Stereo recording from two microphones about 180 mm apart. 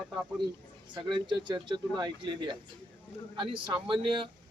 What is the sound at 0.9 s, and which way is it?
Speech, 25° right (ahead or behind).